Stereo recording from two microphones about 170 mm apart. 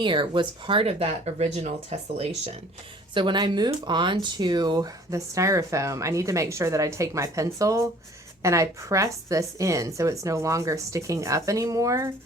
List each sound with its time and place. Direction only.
0.0 s speech: 30° right (ahead or behind)
3.2 s speech: 25° right (ahead or behind)